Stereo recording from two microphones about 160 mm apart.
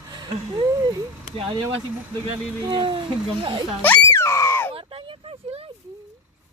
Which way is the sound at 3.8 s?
15° left (ahead or behind).